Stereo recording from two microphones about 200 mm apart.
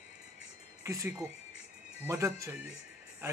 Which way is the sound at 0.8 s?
15° right (ahead or behind).